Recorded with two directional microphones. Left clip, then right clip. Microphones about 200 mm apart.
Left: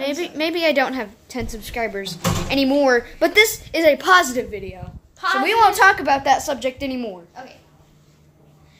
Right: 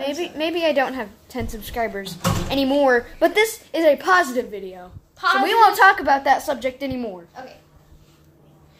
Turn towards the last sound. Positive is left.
turn(degrees=10)  # may be behind; listen again after turning